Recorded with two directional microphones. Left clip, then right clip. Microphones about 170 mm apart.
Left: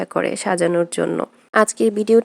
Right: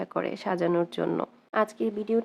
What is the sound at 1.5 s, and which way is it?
Speech, 50° left (ahead or behind).